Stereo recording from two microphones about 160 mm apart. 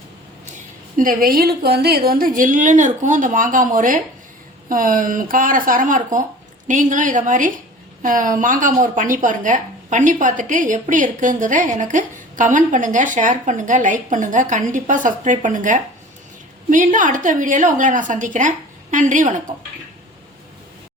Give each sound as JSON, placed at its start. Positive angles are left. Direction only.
{"t": 0.5, "sound": "speech", "side_deg": -60}
{"t": 2.0, "sound": "a woman's voice", "side_deg": -65}